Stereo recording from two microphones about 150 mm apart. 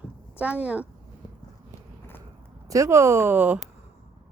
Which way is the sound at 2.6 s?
20° right (ahead or behind).